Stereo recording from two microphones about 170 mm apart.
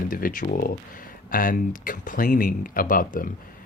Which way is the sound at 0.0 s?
55° left (ahead or behind).